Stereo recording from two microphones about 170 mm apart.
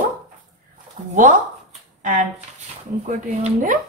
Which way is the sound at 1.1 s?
50° right (ahead or behind).